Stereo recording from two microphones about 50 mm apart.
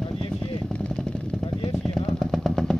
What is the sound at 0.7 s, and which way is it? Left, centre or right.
Motorcycle, centre.